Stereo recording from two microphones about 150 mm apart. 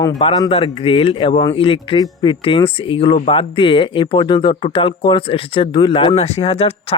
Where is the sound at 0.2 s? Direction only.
35° left (ahead or behind).